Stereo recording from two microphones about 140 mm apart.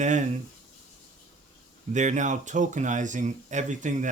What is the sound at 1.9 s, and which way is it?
Speech, 60° right (ahead or behind).